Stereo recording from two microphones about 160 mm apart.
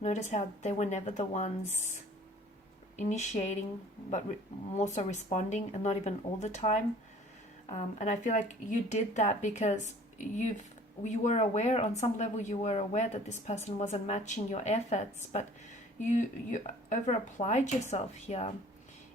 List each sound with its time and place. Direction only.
0.0 s speech: 45° left (ahead or behind)
3.0 s speech: 45° left (ahead or behind)
4.8 s a woman's voice: 45° left (ahead or behind)